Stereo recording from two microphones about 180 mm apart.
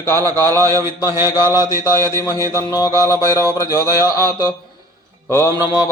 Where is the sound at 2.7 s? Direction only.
20° left (ahead or behind).